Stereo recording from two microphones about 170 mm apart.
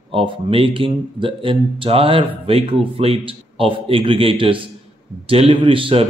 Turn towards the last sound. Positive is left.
turn(degrees=-30)  # may be behind; listen again after turning